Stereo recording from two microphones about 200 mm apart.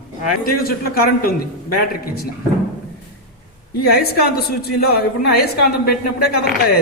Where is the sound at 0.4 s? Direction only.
50° left (ahead or behind).